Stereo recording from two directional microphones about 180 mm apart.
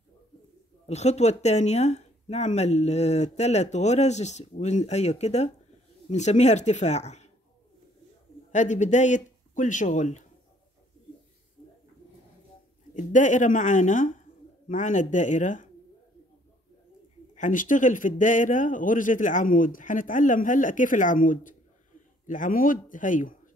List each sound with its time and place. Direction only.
0.8 s speech: 35° left (ahead or behind)
8.5 s speech: 40° left (ahead or behind)
12.9 s a man's voice: 45° left (ahead or behind)
17.4 s a man's voice: 45° left (ahead or behind)